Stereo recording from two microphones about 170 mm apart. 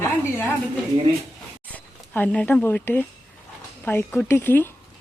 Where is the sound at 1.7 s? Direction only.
10° left (ahead or behind).